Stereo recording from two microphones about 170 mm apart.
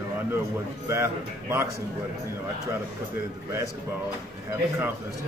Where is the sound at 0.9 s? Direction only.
15° right (ahead or behind).